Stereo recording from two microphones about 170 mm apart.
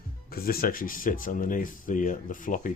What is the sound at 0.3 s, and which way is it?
Speech, 60° left (ahead or behind).